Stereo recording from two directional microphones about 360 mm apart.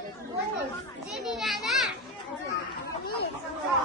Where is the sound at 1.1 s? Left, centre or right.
Centre.